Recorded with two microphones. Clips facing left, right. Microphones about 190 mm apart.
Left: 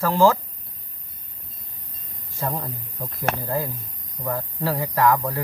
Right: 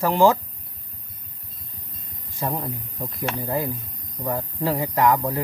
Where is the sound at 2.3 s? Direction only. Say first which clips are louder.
Right 1 dB; 15° right (ahead or behind).